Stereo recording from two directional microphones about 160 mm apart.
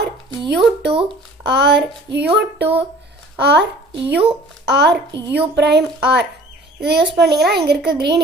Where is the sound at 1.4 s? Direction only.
90° right.